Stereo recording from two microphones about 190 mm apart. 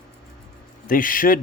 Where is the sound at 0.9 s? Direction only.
45° left (ahead or behind).